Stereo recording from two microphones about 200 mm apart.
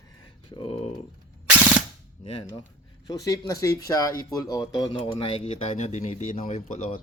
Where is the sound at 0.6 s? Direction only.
30° left (ahead or behind).